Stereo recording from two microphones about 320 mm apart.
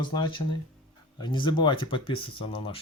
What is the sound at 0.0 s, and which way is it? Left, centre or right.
Speech, centre.